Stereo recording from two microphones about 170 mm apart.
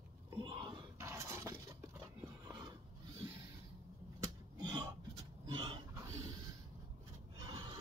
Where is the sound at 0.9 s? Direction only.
15° right (ahead or behind).